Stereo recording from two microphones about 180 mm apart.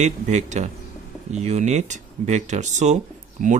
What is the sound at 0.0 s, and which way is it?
A man's voice, 40° right (ahead or behind).